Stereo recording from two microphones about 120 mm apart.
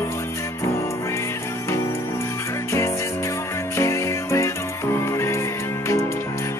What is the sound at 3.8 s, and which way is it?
Music, 25° left (ahead or behind).